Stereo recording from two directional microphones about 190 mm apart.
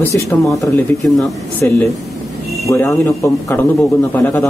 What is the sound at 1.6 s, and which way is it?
Speech, 10° left (ahead or behind).